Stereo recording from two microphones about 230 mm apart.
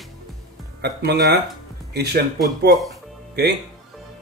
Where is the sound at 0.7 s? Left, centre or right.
Right.